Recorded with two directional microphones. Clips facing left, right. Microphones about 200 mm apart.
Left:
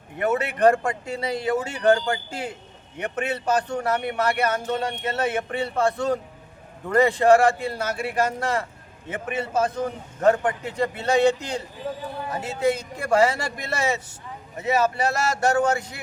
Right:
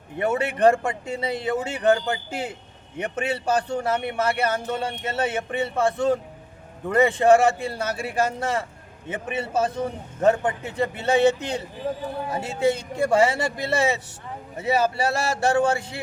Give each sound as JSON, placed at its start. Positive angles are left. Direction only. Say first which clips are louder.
{"t": 0.2, "sound": "speech", "louder": "even", "side_deg": -30}